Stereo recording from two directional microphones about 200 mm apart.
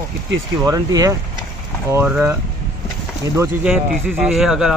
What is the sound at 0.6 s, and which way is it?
Speech, 15° right (ahead or behind).